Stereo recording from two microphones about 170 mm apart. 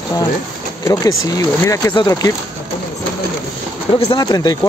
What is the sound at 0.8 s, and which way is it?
Speech, 20° left (ahead or behind).